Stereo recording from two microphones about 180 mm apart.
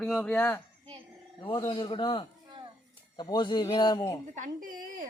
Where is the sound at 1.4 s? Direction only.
25° left (ahead or behind).